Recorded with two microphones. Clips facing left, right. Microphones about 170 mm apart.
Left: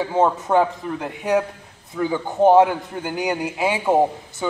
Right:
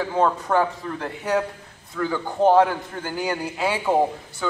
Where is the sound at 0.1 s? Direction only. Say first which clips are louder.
Left 3 dB; 20° left (ahead or behind).